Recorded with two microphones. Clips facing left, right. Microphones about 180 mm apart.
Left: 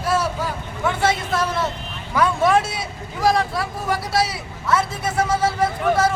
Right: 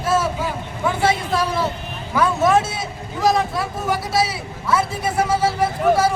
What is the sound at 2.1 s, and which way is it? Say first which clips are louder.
A man's voice: right 1 dB; 5° right (ahead or behind).